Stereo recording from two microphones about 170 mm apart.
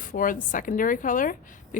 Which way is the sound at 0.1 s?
55° left (ahead or behind).